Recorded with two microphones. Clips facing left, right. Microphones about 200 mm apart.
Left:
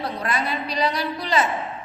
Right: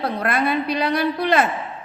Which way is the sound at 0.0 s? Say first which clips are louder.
Right 5 dB; 55° right (ahead or behind).